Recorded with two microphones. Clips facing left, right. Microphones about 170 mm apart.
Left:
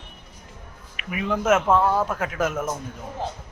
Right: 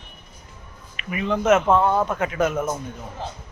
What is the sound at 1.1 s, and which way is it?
A man's voice, 5° left (ahead or behind).